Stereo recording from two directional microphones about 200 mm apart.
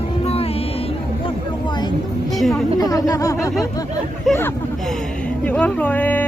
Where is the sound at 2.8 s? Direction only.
20° left (ahead or behind).